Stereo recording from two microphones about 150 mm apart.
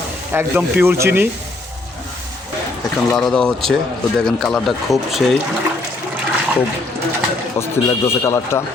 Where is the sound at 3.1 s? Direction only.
5° left (ahead or behind).